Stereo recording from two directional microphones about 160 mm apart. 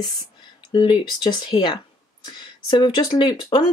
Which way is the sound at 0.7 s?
30° left (ahead or behind).